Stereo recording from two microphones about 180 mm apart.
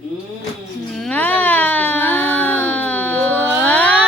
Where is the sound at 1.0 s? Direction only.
10° left (ahead or behind).